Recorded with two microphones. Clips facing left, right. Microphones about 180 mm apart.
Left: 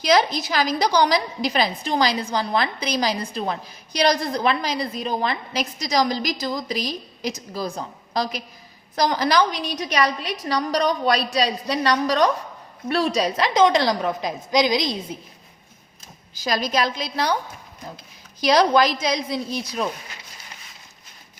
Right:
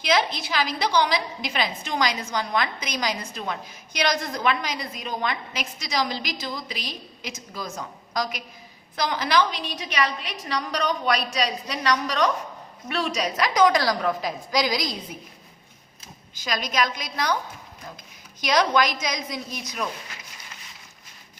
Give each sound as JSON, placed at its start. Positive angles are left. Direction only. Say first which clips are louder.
{"t": 0.0, "sound": "a woman's voice", "louder": "left 5 dB", "side_deg": 40}
{"t": 16.3, "sound": "a woman's voice", "louder": "left 5 dB", "side_deg": 35}
{"t": 18.3, "sound": "a woman's voice", "louder": "left 4 dB", "side_deg": 35}